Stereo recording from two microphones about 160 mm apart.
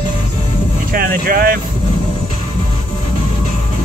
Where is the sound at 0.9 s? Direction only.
65° right (ahead or behind).